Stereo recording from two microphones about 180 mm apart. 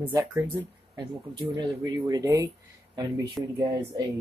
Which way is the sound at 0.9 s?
25° right (ahead or behind).